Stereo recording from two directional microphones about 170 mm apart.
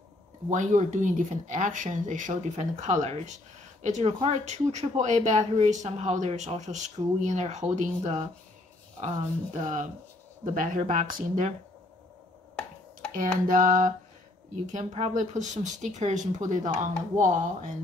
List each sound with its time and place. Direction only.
0.5 s speech: 45° right (ahead or behind)
13.1 s speech: 50° right (ahead or behind)